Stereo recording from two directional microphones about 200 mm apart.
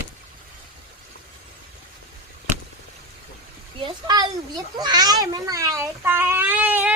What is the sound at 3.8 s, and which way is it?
A child's voice, 20° right (ahead or behind).